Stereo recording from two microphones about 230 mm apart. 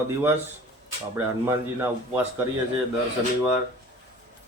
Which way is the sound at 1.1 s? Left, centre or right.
Centre.